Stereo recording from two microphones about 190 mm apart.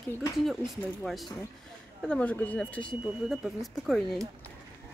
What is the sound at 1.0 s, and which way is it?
A woman's voice, centre (ahead or behind).